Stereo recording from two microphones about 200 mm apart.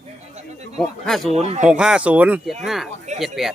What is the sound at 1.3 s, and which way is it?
Speech, 30° right (ahead or behind).